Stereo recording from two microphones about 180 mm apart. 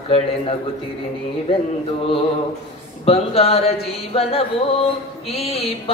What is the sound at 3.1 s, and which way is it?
Speech, 35° left (ahead or behind).